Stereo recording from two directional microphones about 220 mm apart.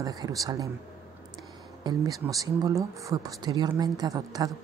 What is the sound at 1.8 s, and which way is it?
Speech, 15° right (ahead or behind).